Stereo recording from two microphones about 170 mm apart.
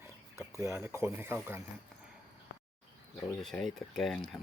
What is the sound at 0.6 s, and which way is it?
Speech, 15° right (ahead or behind).